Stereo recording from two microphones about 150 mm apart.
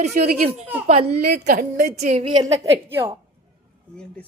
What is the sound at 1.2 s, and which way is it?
A woman's voice, 90° right.